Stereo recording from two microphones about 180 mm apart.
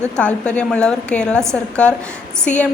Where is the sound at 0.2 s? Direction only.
5° left (ahead or behind).